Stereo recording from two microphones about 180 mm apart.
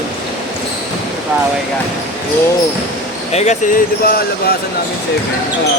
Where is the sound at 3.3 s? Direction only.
40° left (ahead or behind).